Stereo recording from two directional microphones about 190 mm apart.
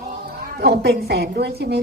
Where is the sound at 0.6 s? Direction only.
60° right (ahead or behind).